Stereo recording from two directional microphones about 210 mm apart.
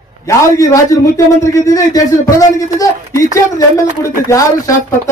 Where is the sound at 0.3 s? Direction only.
15° left (ahead or behind).